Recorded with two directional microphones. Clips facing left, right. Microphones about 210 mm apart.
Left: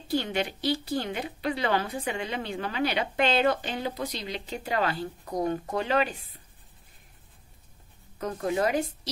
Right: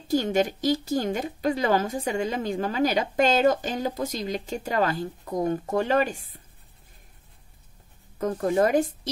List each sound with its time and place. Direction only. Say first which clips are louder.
0.1 s speech: right 5 dB; 45° right (ahead or behind)
8.2 s speech: right 5 dB; 45° right (ahead or behind)